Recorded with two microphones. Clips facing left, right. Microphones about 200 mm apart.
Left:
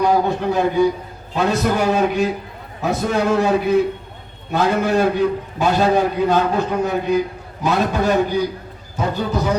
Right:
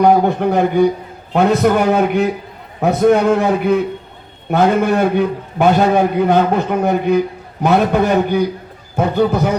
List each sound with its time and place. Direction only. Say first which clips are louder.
0.0 s a man's voice: right 5 dB; 60° right (ahead or behind)